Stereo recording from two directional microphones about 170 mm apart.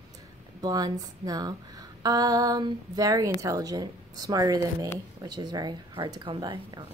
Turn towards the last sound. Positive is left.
turn(degrees=-25)  # may be behind; listen again after turning